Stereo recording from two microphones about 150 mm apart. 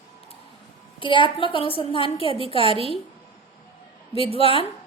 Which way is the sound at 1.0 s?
35° left (ahead or behind).